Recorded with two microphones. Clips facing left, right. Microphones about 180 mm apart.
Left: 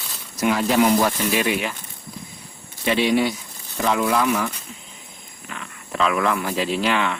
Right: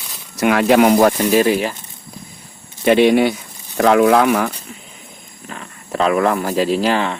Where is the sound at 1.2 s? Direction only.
40° right (ahead or behind).